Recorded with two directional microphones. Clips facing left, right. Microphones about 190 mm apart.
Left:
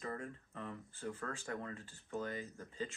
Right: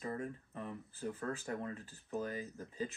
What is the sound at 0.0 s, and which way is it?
Speech, 20° right (ahead or behind).